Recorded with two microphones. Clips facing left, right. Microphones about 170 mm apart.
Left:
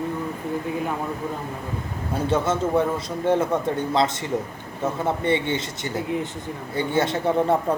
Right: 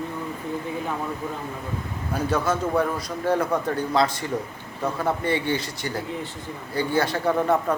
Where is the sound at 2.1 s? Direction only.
25° left (ahead or behind).